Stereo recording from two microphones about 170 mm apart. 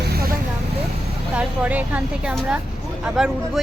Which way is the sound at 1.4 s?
10° right (ahead or behind).